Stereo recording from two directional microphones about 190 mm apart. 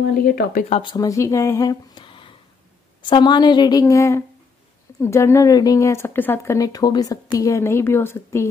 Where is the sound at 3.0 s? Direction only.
25° left (ahead or behind).